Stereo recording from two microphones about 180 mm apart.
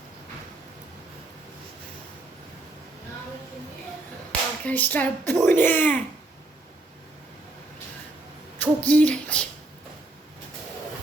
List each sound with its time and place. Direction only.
4.3 s a child's voice: 10° left (ahead or behind)
8.5 s speech: 10° left (ahead or behind)